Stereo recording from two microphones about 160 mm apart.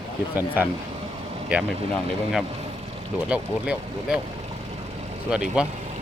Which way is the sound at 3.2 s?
5° right (ahead or behind).